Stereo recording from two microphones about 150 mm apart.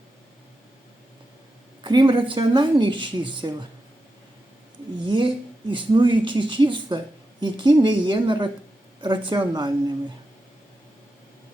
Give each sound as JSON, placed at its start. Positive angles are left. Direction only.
{"t": 1.8, "sound": "speech", "side_deg": -30}
{"t": 5.0, "sound": "speech", "side_deg": -30}